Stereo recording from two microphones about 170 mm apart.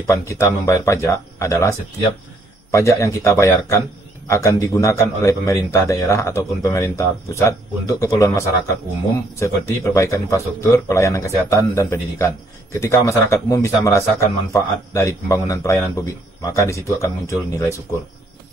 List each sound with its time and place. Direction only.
0.0 s a man's voice: 15° left (ahead or behind)